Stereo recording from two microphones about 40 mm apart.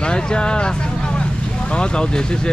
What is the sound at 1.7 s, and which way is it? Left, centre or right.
Speech, left.